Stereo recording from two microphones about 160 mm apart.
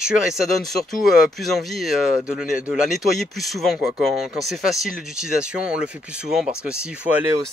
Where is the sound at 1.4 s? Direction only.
Centre (ahead or behind).